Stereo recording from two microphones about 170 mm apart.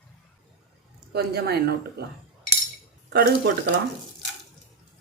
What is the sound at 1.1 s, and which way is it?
Speech, 70° right (ahead or behind).